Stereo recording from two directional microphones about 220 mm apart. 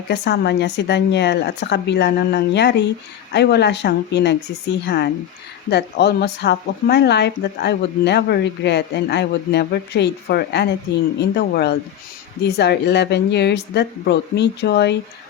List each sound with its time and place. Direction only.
0.1 s speech: 50° left (ahead or behind)